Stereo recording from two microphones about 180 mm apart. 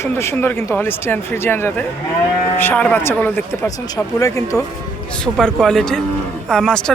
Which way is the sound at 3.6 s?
20° left (ahead or behind).